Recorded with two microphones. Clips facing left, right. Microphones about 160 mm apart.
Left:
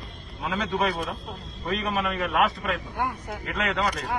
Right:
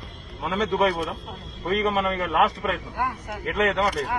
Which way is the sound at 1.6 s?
40° right (ahead or behind).